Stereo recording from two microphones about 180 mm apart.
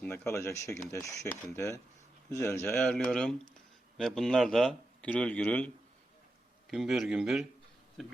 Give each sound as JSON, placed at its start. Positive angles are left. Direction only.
{"t": 0.0, "sound": "a man's voice", "side_deg": 15}